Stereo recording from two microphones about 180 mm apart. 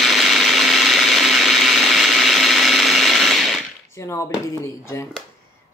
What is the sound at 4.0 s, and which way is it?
Speech, 15° left (ahead or behind).